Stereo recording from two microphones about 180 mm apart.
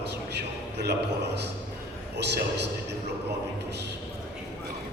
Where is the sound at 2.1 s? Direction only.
70° right (ahead or behind).